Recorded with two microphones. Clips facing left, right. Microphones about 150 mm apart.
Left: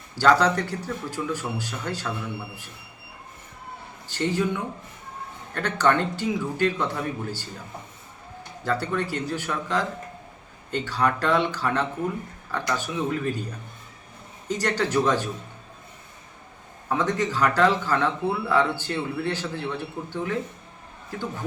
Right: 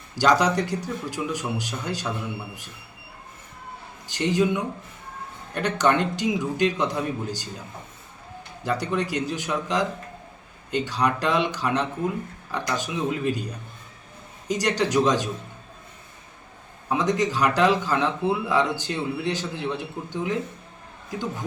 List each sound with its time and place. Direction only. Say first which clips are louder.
0.2 s a man's voice: even; 15° right (ahead or behind)
4.1 s a man's voice: right 3 dB; 15° right (ahead or behind)
8.6 s a man's voice: right 1 dB; 15° right (ahead or behind)
16.9 s a man's voice: right 2 dB; 15° right (ahead or behind)